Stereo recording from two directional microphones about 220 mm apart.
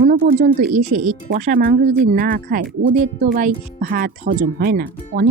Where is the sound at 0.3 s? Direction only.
40° right (ahead or behind).